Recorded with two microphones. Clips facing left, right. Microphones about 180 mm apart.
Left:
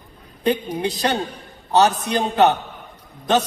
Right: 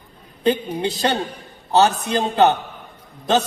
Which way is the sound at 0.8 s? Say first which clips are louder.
Right 1 dB; 25° right (ahead or behind).